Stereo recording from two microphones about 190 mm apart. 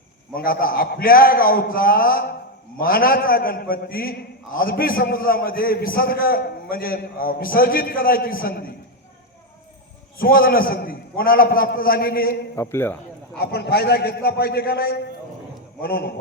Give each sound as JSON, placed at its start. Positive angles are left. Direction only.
{"t": 0.3, "sound": "a man's voice", "side_deg": 50}
{"t": 10.2, "sound": "a man's voice", "side_deg": 50}
{"t": 12.5, "sound": "a man's voice", "side_deg": 15}
{"t": 13.3, "sound": "a man's voice", "side_deg": 55}